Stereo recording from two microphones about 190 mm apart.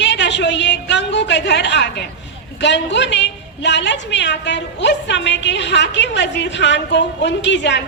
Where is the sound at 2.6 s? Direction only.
70° left (ahead or behind).